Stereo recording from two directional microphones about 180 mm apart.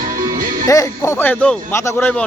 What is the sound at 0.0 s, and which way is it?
Music, 50° right (ahead or behind).